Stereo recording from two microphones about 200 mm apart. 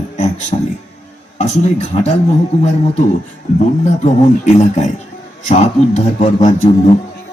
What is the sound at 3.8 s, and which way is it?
A man's voice, 35° left (ahead or behind).